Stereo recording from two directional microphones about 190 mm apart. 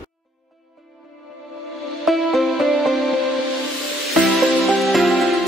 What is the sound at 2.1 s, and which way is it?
Music, centre (ahead or behind).